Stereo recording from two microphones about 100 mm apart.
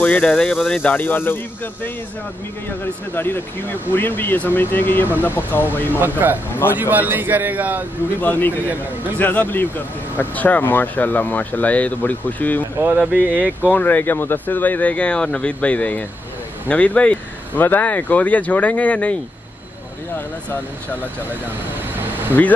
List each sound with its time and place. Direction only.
0.0 s speech: 15° left (ahead or behind)
0.8 s speech: 15° left (ahead or behind)
3.2 s speech: 20° left (ahead or behind)
5.9 s a man's voice: 20° right (ahead or behind)
8.2 s speech: 20° left (ahead or behind)
12.7 s a man's voice: 20° right (ahead or behind)
13.7 s speech: 20° left (ahead or behind)